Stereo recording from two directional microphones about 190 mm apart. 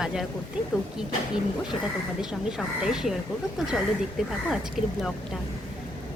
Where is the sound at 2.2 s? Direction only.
5° right (ahead or behind).